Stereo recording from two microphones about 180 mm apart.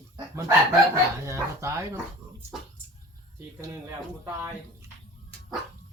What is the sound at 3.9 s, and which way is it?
Speech, 15° right (ahead or behind).